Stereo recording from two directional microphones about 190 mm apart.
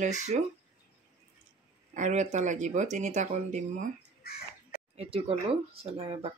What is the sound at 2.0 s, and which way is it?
Speech, 40° right (ahead or behind).